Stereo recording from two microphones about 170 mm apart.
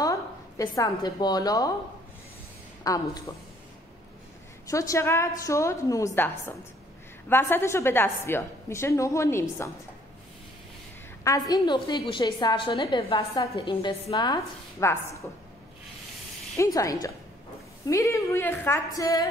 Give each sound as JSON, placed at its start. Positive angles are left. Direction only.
{"t": 0.0, "sound": "a woman's voice", "side_deg": 20}
{"t": 2.8, "sound": "a woman's voice", "side_deg": 20}
{"t": 4.6, "sound": "a woman's voice", "side_deg": 20}
{"t": 11.2, "sound": "a woman's voice", "side_deg": 20}
{"t": 16.5, "sound": "a woman's voice", "side_deg": 20}